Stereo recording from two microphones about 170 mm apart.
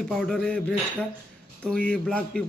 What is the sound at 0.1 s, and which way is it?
Speech, 5° left (ahead or behind).